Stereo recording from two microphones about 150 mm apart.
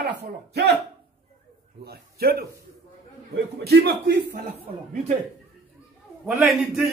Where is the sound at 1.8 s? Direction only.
90° right.